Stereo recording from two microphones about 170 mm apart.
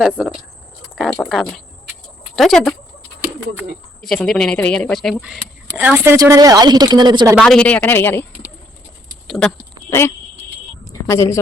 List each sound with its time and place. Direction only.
0.0 s speech: 5° right (ahead or behind)
0.9 s a sound: centre (ahead or behind)
2.3 s speech: centre (ahead or behind)
4.0 s speech: centre (ahead or behind)
5.7 s a woman's voice: 10° right (ahead or behind)
7.3 s speech: 5° left (ahead or behind)
9.2 s clip-clop: centre (ahead or behind)
11.0 s speech: 15° left (ahead or behind)